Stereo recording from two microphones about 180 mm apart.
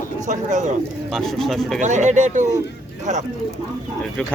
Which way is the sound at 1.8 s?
40° right (ahead or behind).